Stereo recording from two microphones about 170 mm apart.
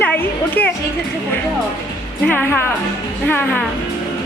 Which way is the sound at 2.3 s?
10° left (ahead or behind).